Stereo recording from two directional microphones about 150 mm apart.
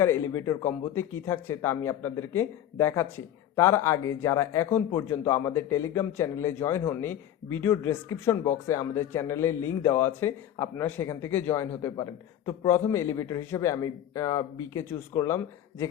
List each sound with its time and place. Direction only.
0.0 s a man's voice: 20° left (ahead or behind)